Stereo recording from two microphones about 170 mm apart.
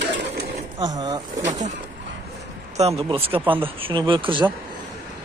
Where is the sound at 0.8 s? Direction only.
20° right (ahead or behind).